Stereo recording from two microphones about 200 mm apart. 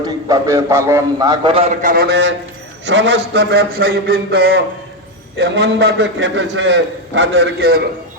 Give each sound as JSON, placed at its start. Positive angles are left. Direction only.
{"t": 0.0, "sound": "a man's voice", "side_deg": -15}